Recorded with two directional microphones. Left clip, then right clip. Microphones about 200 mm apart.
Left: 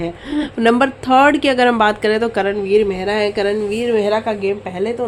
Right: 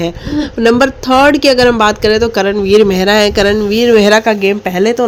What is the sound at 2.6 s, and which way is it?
Speech, 35° right (ahead or behind).